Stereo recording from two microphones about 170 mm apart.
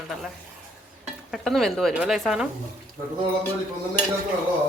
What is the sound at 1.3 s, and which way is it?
Speech, centre (ahead or behind).